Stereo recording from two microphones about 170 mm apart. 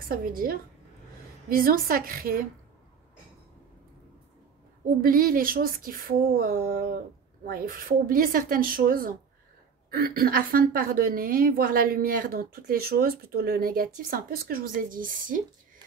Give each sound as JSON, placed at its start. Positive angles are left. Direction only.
{"t": 0.0, "sound": "a woman's voice", "side_deg": -55}
{"t": 5.0, "sound": "a woman's voice", "side_deg": -55}